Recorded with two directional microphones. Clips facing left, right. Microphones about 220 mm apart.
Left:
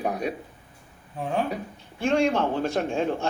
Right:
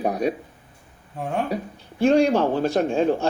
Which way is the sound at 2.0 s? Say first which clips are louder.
Right 5 dB; 35° right (ahead or behind).